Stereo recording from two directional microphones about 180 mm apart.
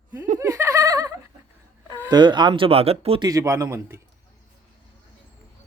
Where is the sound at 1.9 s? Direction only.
20° right (ahead or behind).